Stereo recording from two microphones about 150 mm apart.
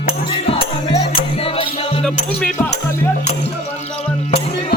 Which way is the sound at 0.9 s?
35° left (ahead or behind).